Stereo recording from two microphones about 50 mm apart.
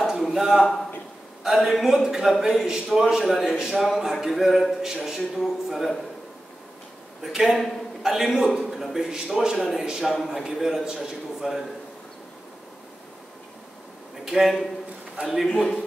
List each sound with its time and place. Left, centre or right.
0.2 s a man's voice: centre
5.4 s a man's voice: centre
7.3 s a man's voice: centre
14.3 s a man's voice: centre
15.4 s a man's voice: centre